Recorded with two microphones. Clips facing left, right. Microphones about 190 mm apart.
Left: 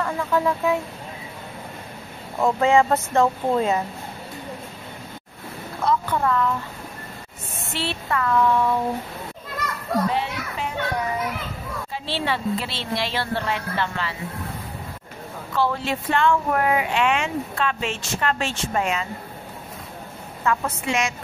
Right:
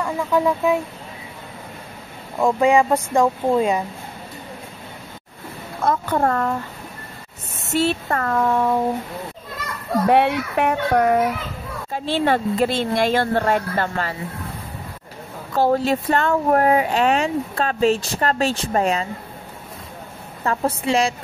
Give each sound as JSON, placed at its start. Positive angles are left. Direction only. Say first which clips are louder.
{"t": 0.0, "sound": "speech", "louder": "right 3 dB", "side_deg": -15}
{"t": 2.6, "sound": "speech", "louder": "right 1 dB", "side_deg": -15}
{"t": 5.9, "sound": "a woman's voice", "louder": "right 2 dB", "side_deg": -45}
{"t": 7.6, "sound": "a woman's voice", "louder": "right 9 dB", "side_deg": -45}
{"t": 10.0, "sound": "speech", "louder": "right 9 dB", "side_deg": -65}
{"t": 11.9, "sound": "a woman's voice", "louder": "right 8 dB", "side_deg": -45}
{"t": 15.5, "sound": "speech", "louder": "right 6 dB", "side_deg": -40}
{"t": 20.4, "sound": "speech", "louder": "right 3 dB", "side_deg": -35}